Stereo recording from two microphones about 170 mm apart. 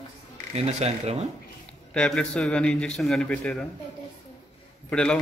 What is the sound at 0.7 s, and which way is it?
Speech, 40° right (ahead or behind).